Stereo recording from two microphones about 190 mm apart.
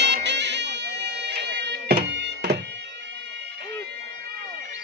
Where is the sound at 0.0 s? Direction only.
65° right (ahead or behind).